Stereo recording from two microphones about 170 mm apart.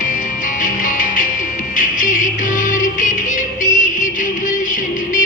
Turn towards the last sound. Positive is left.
turn(degrees=50)  # may be behind; listen again after turning